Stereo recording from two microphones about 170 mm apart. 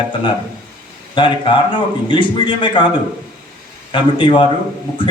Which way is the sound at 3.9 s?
30° left (ahead or behind).